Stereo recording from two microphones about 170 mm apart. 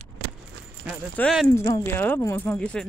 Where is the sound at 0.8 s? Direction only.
5° right (ahead or behind).